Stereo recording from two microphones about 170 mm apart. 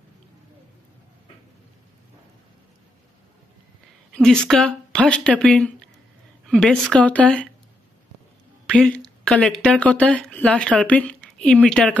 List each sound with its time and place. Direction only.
4.1 s a woman's voice: 5° left (ahead or behind)
8.6 s speech: 5° left (ahead or behind)